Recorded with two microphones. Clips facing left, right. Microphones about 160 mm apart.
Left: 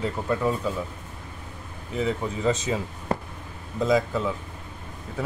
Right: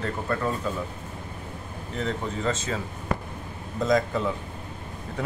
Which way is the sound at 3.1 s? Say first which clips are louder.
Left 2 dB; 35° left (ahead or behind).